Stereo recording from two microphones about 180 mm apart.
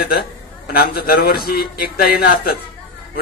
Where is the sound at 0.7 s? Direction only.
55° left (ahead or behind).